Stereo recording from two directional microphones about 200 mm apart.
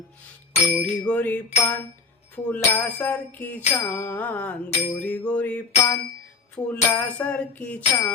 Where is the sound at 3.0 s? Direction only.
10° left (ahead or behind).